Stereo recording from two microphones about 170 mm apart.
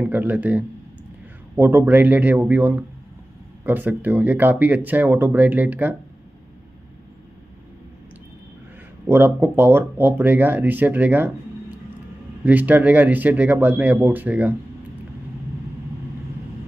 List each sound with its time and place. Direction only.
0.0 s speech: 10° right (ahead or behind)
9.0 s speech: 10° right (ahead or behind)
12.4 s speech: 10° right (ahead or behind)